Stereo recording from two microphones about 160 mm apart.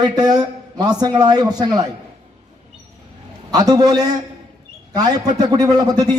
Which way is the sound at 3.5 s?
25° right (ahead or behind).